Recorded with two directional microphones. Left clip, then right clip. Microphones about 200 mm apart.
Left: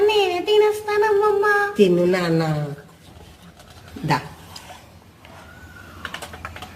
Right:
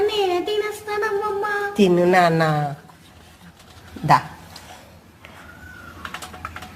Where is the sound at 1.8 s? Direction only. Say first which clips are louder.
Right 2 dB; 25° right (ahead or behind).